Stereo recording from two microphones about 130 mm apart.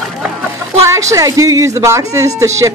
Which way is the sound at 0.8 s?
25° right (ahead or behind).